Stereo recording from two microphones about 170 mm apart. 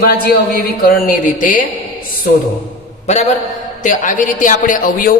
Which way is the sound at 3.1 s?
40° left (ahead or behind).